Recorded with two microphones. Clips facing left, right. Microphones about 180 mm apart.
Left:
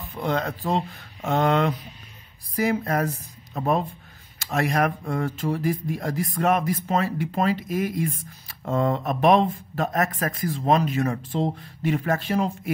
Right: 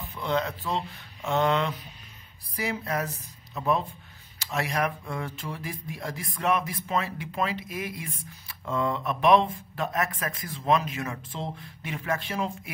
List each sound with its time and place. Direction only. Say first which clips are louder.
0.1 s speech: left 2 dB; 45° left (ahead or behind)